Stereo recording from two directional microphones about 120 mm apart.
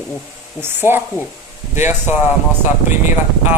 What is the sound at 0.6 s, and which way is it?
Speech, 20° right (ahead or behind).